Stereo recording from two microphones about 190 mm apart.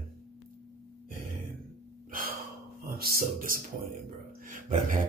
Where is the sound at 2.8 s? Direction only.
50° right (ahead or behind).